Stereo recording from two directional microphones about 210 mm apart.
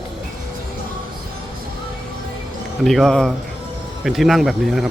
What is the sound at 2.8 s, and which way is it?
A man's voice, centre (ahead or behind).